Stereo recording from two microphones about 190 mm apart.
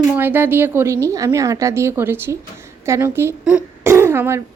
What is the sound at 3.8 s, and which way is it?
Throat clearing, 15° right (ahead or behind).